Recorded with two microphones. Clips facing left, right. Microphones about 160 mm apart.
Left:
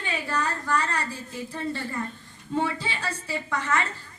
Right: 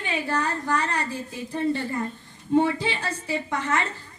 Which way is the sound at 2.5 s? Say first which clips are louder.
Right 6 dB; 20° right (ahead or behind).